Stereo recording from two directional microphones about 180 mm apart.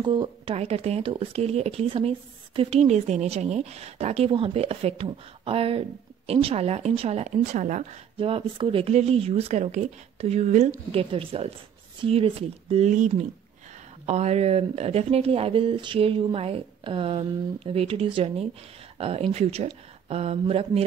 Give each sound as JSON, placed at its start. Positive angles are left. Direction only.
{"t": 0.0, "sound": "speech", "side_deg": -25}
{"t": 8.2, "sound": "speech", "side_deg": -30}